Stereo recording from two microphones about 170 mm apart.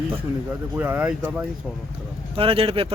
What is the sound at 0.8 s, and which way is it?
Speech, 10° right (ahead or behind).